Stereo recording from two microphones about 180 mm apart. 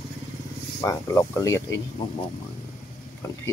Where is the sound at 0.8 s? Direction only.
15° left (ahead or behind).